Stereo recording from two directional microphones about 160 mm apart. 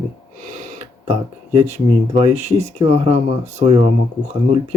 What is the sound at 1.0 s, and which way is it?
Speech, 45° right (ahead or behind).